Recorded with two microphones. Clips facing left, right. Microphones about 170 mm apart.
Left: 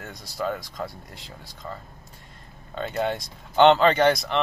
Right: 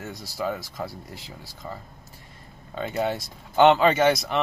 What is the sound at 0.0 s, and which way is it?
Speech, 5° right (ahead or behind).